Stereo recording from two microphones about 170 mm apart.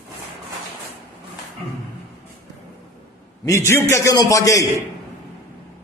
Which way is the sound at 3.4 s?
15° left (ahead or behind).